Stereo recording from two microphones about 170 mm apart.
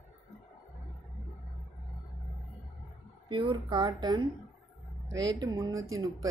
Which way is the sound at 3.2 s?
30° right (ahead or behind).